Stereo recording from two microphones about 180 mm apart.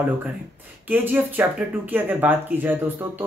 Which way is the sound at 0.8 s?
10° right (ahead or behind).